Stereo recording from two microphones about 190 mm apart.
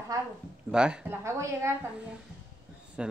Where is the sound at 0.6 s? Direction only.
5° right (ahead or behind).